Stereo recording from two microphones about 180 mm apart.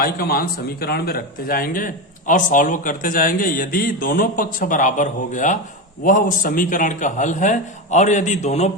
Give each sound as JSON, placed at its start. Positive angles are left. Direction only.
{"t": 0.0, "sound": "speech", "side_deg": 55}